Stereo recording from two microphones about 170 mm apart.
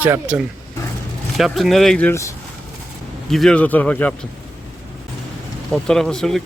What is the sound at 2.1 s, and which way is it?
Speech, 15° left (ahead or behind).